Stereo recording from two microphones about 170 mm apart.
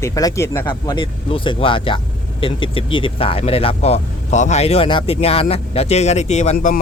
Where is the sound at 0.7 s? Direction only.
25° left (ahead or behind); by 6.7 s 45° left (ahead or behind).